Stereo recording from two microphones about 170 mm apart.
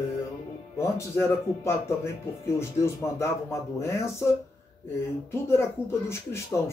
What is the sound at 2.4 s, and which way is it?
Speech, 15° left (ahead or behind).